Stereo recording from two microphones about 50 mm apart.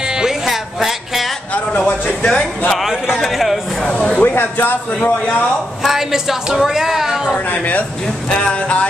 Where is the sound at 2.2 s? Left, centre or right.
Centre.